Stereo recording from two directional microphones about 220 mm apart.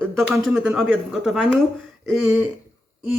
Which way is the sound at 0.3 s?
Centre (ahead or behind).